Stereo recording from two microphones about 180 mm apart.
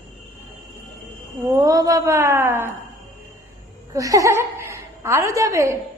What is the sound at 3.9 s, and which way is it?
A woman's voice, 20° right (ahead or behind).